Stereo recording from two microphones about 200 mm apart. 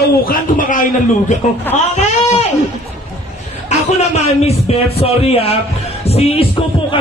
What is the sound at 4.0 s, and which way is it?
Speech, 30° left (ahead or behind).